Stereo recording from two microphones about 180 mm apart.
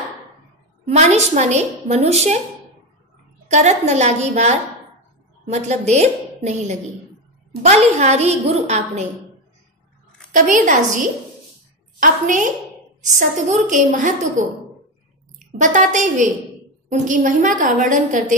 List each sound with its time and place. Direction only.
0.8 s a woman's voice: 40° right (ahead or behind)
3.4 s a woman's voice: 40° right (ahead or behind)
10.3 s a woman's voice: 45° right (ahead or behind)
12.0 s a woman's voice: 45° right (ahead or behind)
15.3 s a woman's voice: 45° right (ahead or behind)